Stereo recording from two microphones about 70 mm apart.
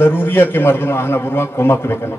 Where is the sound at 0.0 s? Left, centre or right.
Left.